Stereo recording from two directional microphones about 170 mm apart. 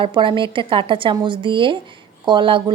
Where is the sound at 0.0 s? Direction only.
30° right (ahead or behind).